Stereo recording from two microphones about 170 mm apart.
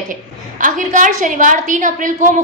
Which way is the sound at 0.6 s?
50° right (ahead or behind).